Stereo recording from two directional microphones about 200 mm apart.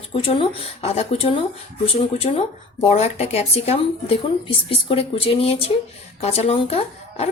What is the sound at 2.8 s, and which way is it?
Speech, 30° left (ahead or behind).